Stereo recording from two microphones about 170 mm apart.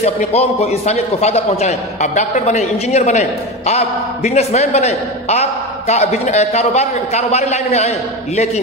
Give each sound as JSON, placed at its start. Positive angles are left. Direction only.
{"t": 0.0, "sound": "a man's voice", "side_deg": 40}